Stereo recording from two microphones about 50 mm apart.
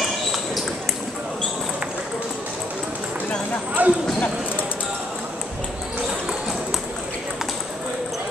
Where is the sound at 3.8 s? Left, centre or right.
Right.